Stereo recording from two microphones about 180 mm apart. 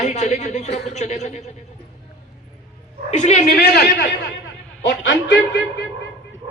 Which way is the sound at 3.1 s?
40° left (ahead or behind).